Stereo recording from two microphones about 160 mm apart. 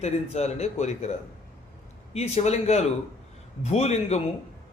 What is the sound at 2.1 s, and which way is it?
A man's voice, 40° left (ahead or behind).